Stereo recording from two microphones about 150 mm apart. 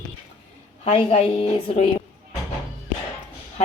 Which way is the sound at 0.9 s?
45° left (ahead or behind).